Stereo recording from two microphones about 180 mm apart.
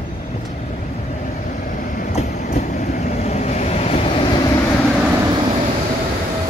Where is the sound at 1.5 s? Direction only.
50° left (ahead or behind); by 4.2 s 30° left (ahead or behind).